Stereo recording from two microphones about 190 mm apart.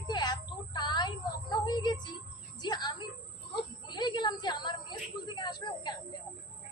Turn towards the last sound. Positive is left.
turn(degrees=20)  # may be behind; listen again after turning